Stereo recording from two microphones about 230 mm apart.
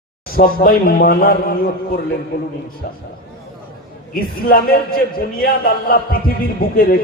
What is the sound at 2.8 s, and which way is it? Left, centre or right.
Speech, left.